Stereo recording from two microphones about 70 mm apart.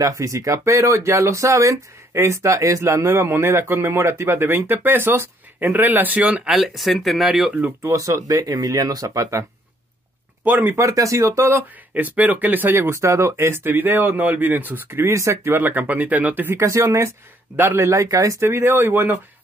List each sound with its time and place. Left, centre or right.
0.0 s speech: right; by 6.5 s centre
6.5 s speech: centre
7.9 s speech: right
10.4 s speech: right
10.8 s speech: right
11.9 s speech: right
15.1 s speech: right
15.5 s speech: right
16.5 s speech: right